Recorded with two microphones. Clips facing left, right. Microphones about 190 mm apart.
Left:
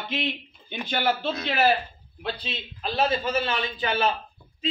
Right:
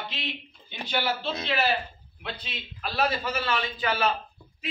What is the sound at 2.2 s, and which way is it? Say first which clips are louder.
Speech: left 6 dB; 35° left (ahead or behind).